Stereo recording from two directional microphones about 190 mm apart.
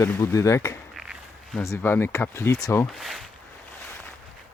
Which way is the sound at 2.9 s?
Centre (ahead or behind).